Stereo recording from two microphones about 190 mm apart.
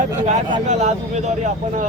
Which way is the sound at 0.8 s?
35° right (ahead or behind).